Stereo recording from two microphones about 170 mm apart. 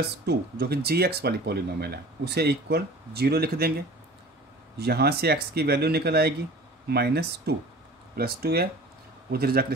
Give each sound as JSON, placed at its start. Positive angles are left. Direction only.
{"t": 0.0, "sound": "speech", "side_deg": -70}
{"t": 4.7, "sound": "speech", "side_deg": -70}